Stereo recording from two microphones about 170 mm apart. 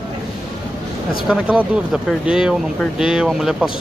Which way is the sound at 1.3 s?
5° right (ahead or behind).